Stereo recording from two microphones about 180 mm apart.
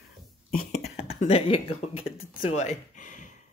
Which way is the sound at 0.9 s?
35° left (ahead or behind).